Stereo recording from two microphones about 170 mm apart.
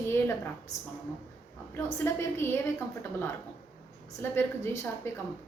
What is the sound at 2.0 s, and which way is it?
Speech, 15° left (ahead or behind).